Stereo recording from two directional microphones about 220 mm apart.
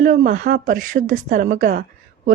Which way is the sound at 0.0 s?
40° right (ahead or behind).